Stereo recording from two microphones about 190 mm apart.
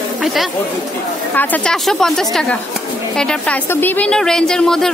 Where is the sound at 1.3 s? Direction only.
5° left (ahead or behind).